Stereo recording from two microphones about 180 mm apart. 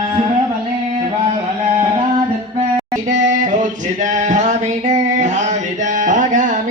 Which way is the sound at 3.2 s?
45° right (ahead or behind).